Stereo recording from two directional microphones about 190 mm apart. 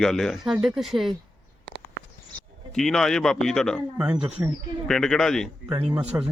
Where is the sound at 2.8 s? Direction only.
Centre (ahead or behind).